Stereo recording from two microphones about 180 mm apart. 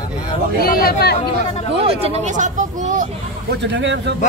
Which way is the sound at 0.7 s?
55° left (ahead or behind).